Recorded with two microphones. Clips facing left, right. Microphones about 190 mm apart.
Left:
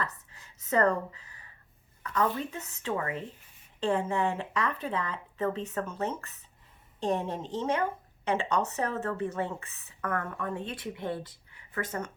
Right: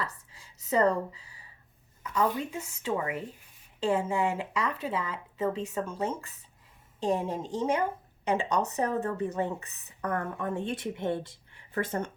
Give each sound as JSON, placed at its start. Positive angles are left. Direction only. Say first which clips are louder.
{"t": 0.0, "sound": "a woman's voice", "louder": "left 1 dB", "side_deg": -10}